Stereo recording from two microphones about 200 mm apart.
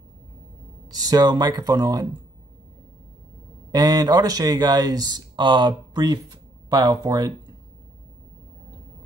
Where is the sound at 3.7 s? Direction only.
20° right (ahead or behind).